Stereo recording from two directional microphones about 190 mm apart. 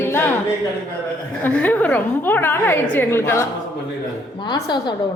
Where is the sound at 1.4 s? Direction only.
10° left (ahead or behind).